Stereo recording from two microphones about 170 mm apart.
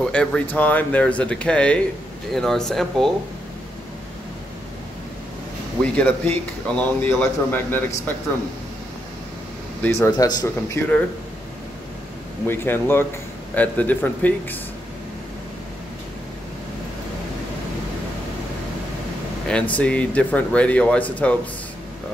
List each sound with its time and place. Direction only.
0.0 s speech: 5° left (ahead or behind)
5.9 s speech: 10° left (ahead or behind)
9.8 s speech: 15° left (ahead or behind)
12.4 s speech: 15° left (ahead or behind)
19.7 s speech: 5° left (ahead or behind)